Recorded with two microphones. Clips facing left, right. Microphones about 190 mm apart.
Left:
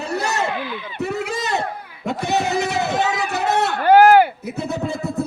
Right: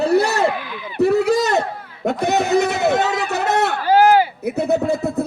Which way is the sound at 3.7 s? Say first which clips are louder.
Left 3 dB; 55° left (ahead or behind).